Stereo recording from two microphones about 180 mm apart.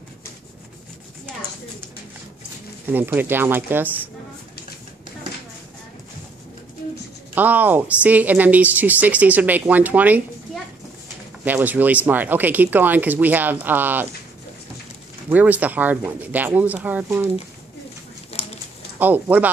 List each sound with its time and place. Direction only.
2.9 s a woman's voice: 10° right (ahead or behind)
7.3 s a woman's voice: 10° right (ahead or behind)
15.2 s a woman's voice: 10° right (ahead or behind)
18.3 s a sound: 35° left (ahead or behind)
18.9 s a woman's voice: 10° right (ahead or behind)